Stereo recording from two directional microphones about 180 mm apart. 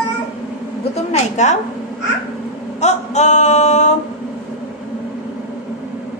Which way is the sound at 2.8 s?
40° left (ahead or behind).